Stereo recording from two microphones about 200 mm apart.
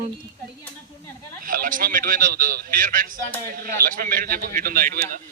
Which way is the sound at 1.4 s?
45° right (ahead or behind).